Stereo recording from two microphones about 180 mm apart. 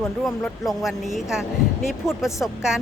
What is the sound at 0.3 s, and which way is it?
A woman's voice, centre (ahead or behind).